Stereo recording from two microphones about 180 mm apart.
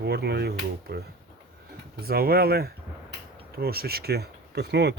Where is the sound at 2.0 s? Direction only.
60° right (ahead or behind).